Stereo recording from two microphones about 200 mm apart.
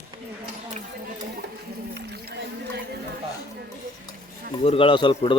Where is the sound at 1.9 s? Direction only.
55° right (ahead or behind).